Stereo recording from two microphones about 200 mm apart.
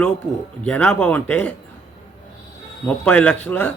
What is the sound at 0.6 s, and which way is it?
Speech, 5° left (ahead or behind).